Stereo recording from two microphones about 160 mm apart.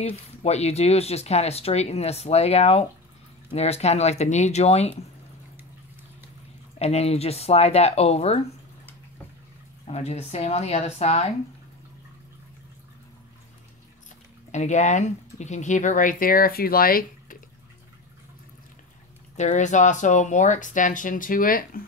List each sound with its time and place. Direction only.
0.0 s speech: 40° left (ahead or behind)
6.8 s speech: 40° left (ahead or behind)
9.8 s speech: 40° left (ahead or behind)
14.5 s speech: 50° left (ahead or behind); by 17.4 s 65° left (ahead or behind)
19.3 s speech: 50° left (ahead or behind)